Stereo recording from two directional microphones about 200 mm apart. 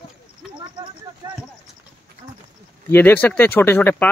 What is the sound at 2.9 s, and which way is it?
Speech, 10° left (ahead or behind).